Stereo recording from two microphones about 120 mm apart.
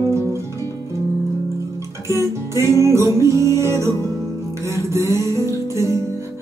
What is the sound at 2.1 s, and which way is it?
Music, 25° right (ahead or behind).